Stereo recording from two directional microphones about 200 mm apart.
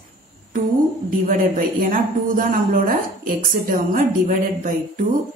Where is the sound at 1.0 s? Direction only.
45° right (ahead or behind).